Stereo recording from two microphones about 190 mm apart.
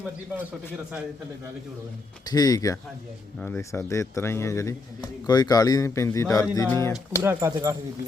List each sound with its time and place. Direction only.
2.2 s speech: 20° left (ahead or behind)
6.9 s speech: 15° right (ahead or behind)